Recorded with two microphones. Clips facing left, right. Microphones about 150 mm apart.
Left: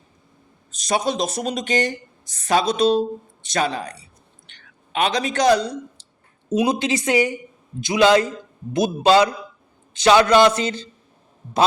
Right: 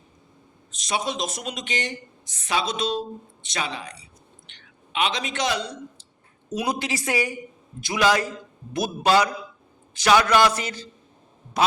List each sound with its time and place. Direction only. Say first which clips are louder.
0.8 s speech: left 5 dB; 40° left (ahead or behind)
6.5 s a man's voice: left 7 dB; 20° left (ahead or behind)